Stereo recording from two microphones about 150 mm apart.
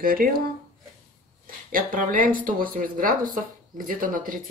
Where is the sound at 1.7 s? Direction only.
65° right (ahead or behind).